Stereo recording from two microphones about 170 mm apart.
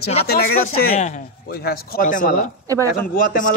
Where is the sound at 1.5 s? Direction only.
65° left (ahead or behind).